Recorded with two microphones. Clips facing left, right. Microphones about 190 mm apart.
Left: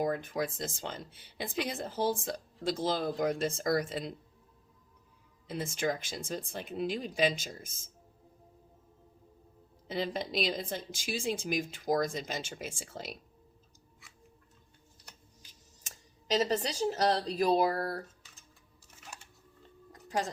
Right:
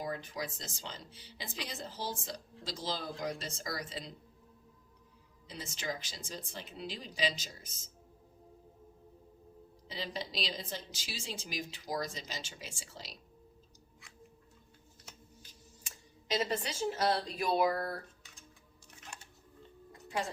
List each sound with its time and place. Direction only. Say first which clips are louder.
0.0 s a woman's voice: left 7 dB; 55° left (ahead or behind)
5.5 s a woman's voice: left 8 dB; 55° left (ahead or behind)
9.8 s a woman's voice: left 7 dB; 50° left (ahead or behind)
16.4 s speech: left 4 dB; 40° left (ahead or behind)
18.9 s a sound: left 1 dB; 5° left (ahead or behind)
19.9 s a sound: left 3 dB; 40° left (ahead or behind)